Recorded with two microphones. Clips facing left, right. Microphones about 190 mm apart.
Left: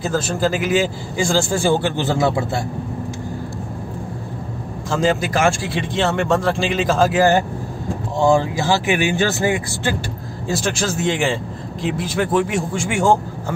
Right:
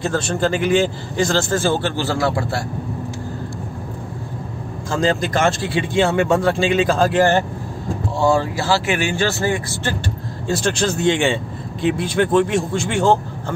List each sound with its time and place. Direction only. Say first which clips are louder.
0.0 s speech: even; 5° left (ahead or behind); by 2.6 s 20° left (ahead or behind)
4.9 s speech: even; 5° left (ahead or behind)
8.5 s speech: left 1 dB; 15° left (ahead or behind)